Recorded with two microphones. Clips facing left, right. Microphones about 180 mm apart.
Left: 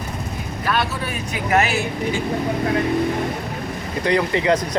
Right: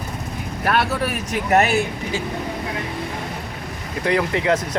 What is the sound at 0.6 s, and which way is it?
Vehicle, 60° right (ahead or behind).